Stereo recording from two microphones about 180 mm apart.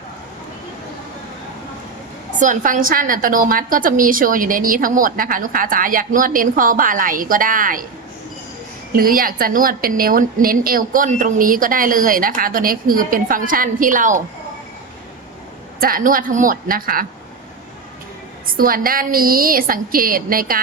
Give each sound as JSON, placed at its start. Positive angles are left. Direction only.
{"t": 2.3, "sound": "a woman's voice", "side_deg": -45}
{"t": 9.0, "sound": "a woman's voice", "side_deg": -55}
{"t": 15.8, "sound": "a woman's voice", "side_deg": -50}
{"t": 18.5, "sound": "a woman's voice", "side_deg": -55}